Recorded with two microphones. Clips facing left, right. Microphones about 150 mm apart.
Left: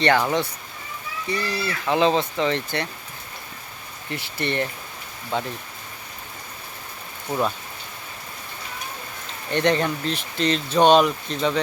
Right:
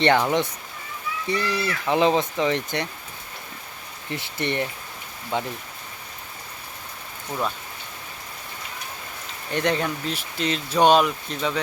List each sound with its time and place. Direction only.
0.0 s speech: 20° right (ahead or behind)
4.1 s speech: 20° right (ahead or behind)
9.5 s speech: 5° right (ahead or behind)